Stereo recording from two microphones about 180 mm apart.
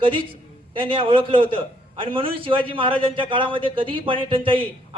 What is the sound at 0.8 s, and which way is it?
A man's voice, 30° right (ahead or behind).